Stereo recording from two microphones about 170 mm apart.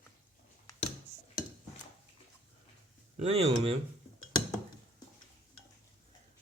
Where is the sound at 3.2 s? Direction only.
35° right (ahead or behind).